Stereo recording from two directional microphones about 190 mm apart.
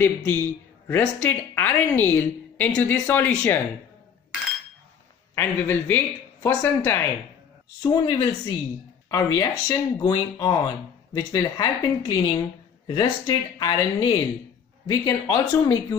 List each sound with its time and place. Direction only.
0.0 s a woman's voice: 10° left (ahead or behind)
5.3 s a woman's voice: 10° left (ahead or behind)
7.8 s a woman's voice: 25° left (ahead or behind)